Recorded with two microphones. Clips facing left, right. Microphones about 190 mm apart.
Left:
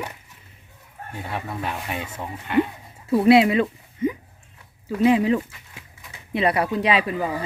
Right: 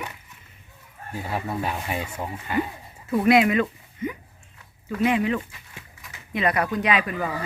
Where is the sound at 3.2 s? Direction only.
30° left (ahead or behind).